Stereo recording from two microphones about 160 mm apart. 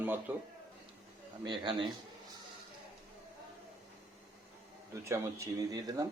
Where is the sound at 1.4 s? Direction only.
30° right (ahead or behind).